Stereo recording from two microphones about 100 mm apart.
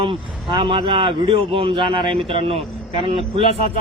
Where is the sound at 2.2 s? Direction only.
70° right (ahead or behind).